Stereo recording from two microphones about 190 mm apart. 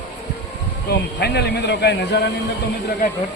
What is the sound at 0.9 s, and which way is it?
Speech, 60° left (ahead or behind).